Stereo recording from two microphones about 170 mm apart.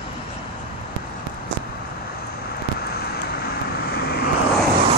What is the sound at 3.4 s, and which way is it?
Vehicle, 65° left (ahead or behind).